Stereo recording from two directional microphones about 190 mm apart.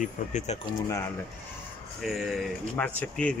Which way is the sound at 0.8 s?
15° left (ahead or behind).